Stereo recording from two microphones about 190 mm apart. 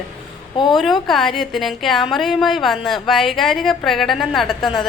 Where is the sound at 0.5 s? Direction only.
25° left (ahead or behind).